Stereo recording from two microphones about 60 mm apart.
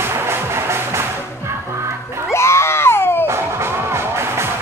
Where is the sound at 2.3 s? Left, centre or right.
Left.